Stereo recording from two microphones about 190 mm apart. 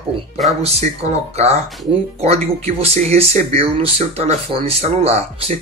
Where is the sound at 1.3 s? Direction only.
35° right (ahead or behind).